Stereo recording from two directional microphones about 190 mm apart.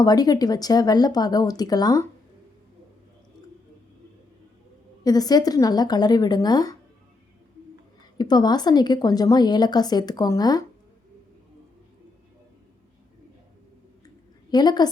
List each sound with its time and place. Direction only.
0.0 s a woman's voice: 20° left (ahead or behind)
5.0 s a woman's voice: 20° left (ahead or behind)
8.2 s a woman's voice: 20° left (ahead or behind)
14.5 s a woman's voice: 20° left (ahead or behind)